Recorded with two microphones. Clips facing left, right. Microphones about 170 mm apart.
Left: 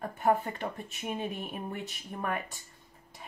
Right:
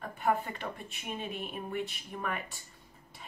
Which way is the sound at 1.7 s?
45° left (ahead or behind).